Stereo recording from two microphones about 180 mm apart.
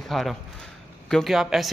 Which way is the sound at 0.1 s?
Centre (ahead or behind).